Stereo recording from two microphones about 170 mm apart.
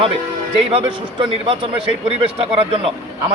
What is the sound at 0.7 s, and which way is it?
A man's voice, 30° right (ahead or behind).